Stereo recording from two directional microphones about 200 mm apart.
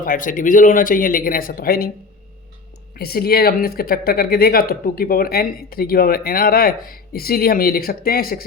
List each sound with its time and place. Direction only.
0.0 s speech: 40° left (ahead or behind)
2.9 s speech: 50° left (ahead or behind)